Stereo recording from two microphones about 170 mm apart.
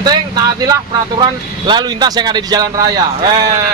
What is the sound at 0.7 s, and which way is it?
Speech, 25° right (ahead or behind).